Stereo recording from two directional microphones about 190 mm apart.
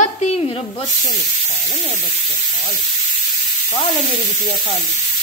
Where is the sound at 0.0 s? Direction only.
35° left (ahead or behind).